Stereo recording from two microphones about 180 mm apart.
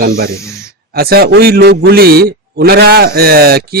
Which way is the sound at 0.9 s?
60° right (ahead or behind).